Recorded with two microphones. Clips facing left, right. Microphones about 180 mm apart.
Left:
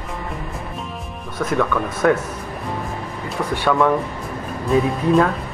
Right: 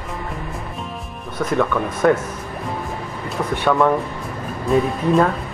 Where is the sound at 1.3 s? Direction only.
10° right (ahead or behind).